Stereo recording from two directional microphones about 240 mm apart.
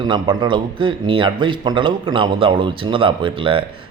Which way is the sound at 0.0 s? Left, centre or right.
Centre.